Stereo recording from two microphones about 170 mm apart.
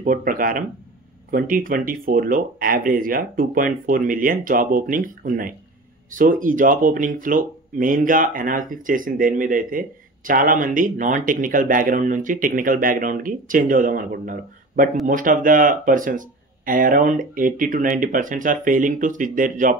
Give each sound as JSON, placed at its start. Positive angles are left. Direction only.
{"t": 0.0, "sound": "speech", "side_deg": -55}